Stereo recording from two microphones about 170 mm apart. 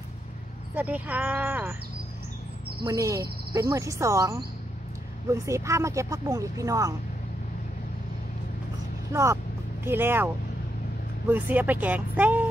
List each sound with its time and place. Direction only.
0.7 s speech: 10° right (ahead or behind)
2.8 s speech: 20° right (ahead or behind)
9.1 s speech: 15° right (ahead or behind)